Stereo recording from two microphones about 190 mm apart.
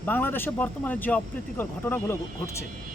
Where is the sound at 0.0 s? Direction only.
10° left (ahead or behind).